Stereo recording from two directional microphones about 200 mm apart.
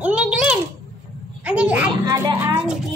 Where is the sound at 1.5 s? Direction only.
5° right (ahead or behind).